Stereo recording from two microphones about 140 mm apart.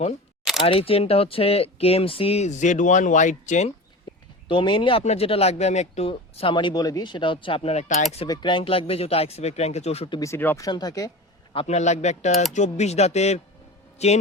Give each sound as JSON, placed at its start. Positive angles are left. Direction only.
{"t": 0.6, "sound": "speech", "side_deg": 40}
{"t": 4.4, "sound": "speech", "side_deg": 35}
{"t": 6.1, "sound": "speech", "side_deg": 40}
{"t": 8.2, "sound": "speech", "side_deg": 35}
{"t": 10.2, "sound": "speech", "side_deg": 20}
{"t": 10.7, "sound": "speech", "side_deg": 30}
{"t": 11.5, "sound": "speech", "side_deg": 55}
{"t": 12.3, "sound": "speech", "side_deg": 0}
{"t": 12.5, "sound": "speech", "side_deg": 55}